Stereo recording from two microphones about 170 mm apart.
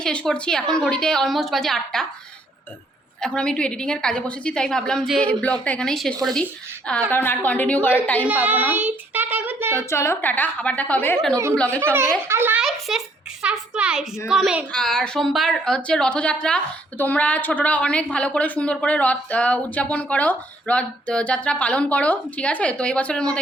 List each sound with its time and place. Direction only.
0.0 s a woman's voice: 5° left (ahead or behind)
3.2 s a woman's voice: 5° left (ahead or behind)
8.3 s a child's voice: 10° right (ahead or behind)
9.7 s a woman's voice: 15° left (ahead or behind)
12.3 s a child's voice: 10° right (ahead or behind); by 23.2 s 5° left (ahead or behind)